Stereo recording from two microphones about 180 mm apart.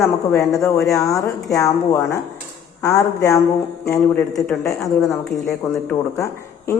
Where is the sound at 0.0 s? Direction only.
15° left (ahead or behind).